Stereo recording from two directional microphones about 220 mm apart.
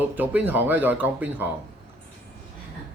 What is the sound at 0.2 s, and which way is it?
Speech, 10° right (ahead or behind).